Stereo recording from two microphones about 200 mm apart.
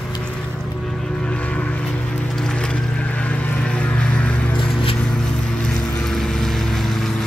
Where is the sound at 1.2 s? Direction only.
5° left (ahead or behind).